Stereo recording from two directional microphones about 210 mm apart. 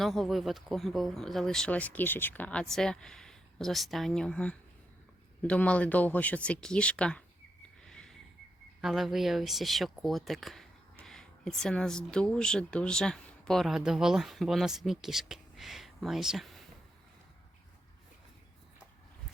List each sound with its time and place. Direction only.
0.0 s speech: centre (ahead or behind)
7.9 s a sound: 5° left (ahead or behind)
8.8 s speech: centre (ahead or behind)